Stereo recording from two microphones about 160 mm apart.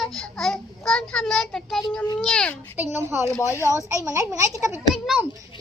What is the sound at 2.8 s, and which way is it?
A woman's voice, 15° right (ahead or behind).